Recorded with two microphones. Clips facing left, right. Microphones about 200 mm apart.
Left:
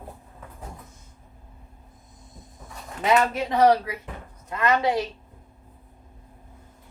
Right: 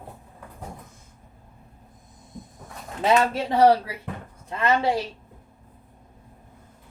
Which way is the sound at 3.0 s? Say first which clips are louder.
Right 1 dB; 30° right (ahead or behind).